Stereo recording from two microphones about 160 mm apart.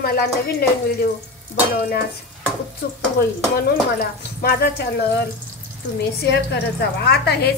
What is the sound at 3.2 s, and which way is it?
Speech, 75° left (ahead or behind).